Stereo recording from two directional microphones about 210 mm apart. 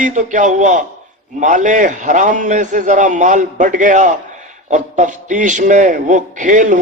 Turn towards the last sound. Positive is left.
turn(degrees=-40)  # may be behind; listen again after turning